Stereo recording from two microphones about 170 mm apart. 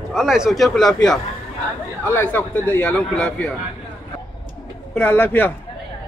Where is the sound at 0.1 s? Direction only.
5° right (ahead or behind).